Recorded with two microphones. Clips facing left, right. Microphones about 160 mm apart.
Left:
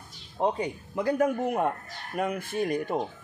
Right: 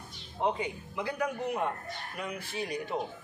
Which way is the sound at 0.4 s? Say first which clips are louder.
Left 4 dB; 40° left (ahead or behind).